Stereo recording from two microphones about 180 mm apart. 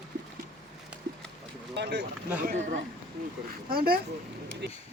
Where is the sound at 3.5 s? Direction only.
55° right (ahead or behind).